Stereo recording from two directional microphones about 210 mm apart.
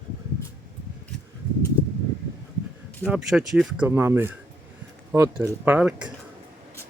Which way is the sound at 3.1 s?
Centre (ahead or behind).